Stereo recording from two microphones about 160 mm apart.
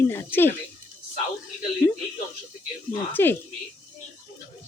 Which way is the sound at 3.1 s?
10° left (ahead or behind).